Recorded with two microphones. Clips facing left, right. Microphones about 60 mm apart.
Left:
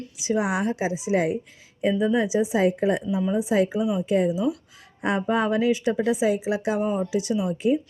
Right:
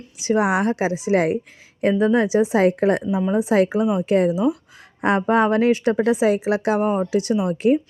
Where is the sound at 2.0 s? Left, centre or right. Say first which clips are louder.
Right 5 dB; right.